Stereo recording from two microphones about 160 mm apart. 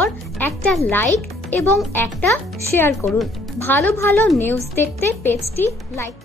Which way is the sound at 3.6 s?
15° left (ahead or behind).